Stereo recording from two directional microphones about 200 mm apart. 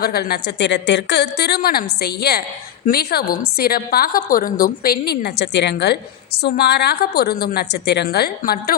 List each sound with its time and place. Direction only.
0.0 s a woman's voice: 50° left (ahead or behind)